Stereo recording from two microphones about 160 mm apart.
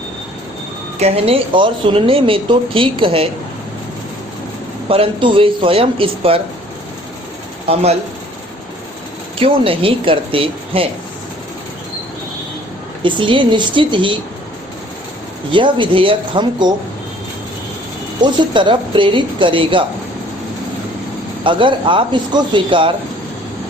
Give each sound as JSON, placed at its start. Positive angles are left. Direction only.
{"t": 0.9, "sound": "speech", "side_deg": -40}
{"t": 4.9, "sound": "speech", "side_deg": -35}
{"t": 7.7, "sound": "speech", "side_deg": -40}
{"t": 9.4, "sound": "speech", "side_deg": -35}
{"t": 13.0, "sound": "speech", "side_deg": -30}
{"t": 15.5, "sound": "speech", "side_deg": -30}
{"t": 18.2, "sound": "speech", "side_deg": -30}
{"t": 21.4, "sound": "speech", "side_deg": -30}